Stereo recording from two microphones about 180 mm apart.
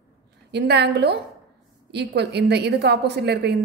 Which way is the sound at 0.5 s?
65° right (ahead or behind).